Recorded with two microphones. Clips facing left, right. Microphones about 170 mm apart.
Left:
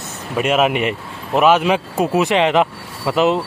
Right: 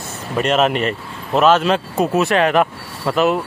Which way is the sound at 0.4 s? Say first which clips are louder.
Even; 5° left (ahead or behind).